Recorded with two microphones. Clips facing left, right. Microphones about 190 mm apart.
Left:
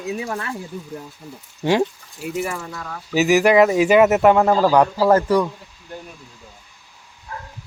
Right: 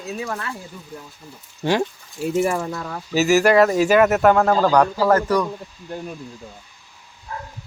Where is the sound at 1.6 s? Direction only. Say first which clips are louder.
Left 2 dB; 15° left (ahead or behind).